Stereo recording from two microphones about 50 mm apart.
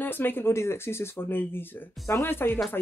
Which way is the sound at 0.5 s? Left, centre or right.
Left.